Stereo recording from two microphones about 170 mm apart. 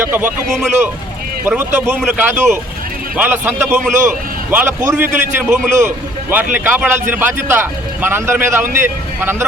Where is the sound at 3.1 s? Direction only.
10° right (ahead or behind).